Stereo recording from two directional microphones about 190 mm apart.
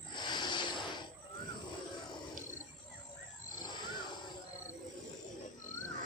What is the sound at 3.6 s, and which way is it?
Wild animals, 25° left (ahead or behind).